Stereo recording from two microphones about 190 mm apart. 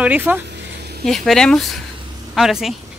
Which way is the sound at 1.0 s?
Centre (ahead or behind).